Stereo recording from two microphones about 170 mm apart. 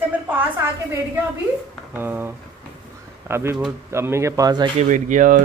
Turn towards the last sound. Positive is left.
turn(degrees=-50)  # may be behind; listen again after turning